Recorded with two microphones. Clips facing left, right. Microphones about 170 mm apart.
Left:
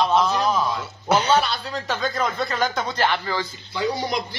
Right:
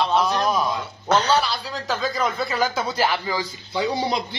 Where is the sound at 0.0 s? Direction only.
5° right (ahead or behind).